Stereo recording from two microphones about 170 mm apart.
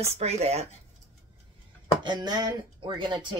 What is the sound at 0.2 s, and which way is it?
Speech, 40° right (ahead or behind).